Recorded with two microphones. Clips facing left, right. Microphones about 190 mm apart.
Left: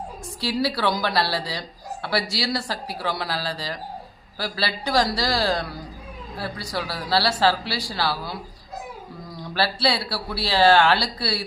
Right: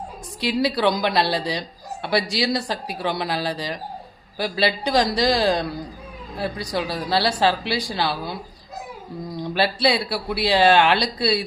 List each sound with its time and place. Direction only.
0.3 s speech: 20° right (ahead or behind)